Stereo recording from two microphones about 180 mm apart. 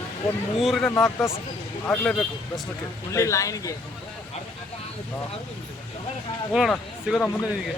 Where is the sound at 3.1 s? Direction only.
15° left (ahead or behind).